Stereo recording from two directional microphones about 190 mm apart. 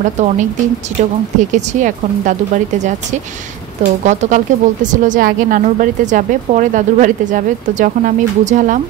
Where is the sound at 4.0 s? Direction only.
40° right (ahead or behind).